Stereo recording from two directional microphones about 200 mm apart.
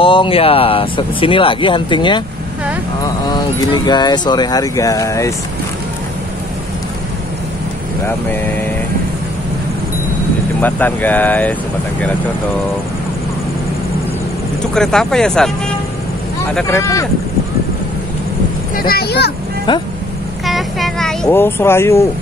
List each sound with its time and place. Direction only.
0.0 s speech: 25° left (ahead or behind)
3.3 s speech: 20° left (ahead or behind)
10.6 s speech: 10° left (ahead or behind)
14.7 s speech: 5° left (ahead or behind)
16.6 s speech: 15° left (ahead or behind)
18.8 s speech: 50° left (ahead or behind)
20.4 s a child's voice: centre (ahead or behind)